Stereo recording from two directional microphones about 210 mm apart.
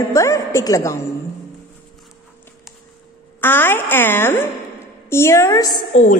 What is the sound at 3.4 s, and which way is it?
A woman's voice, 10° left (ahead or behind).